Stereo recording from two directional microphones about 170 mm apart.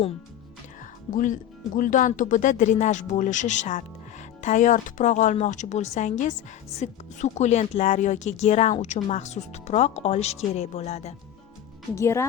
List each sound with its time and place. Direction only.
1.1 s speech: 50° left (ahead or behind)
11.9 s speech: 15° left (ahead or behind)